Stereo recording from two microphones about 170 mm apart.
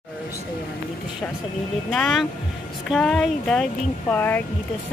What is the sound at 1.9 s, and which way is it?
Speech, centre (ahead or behind).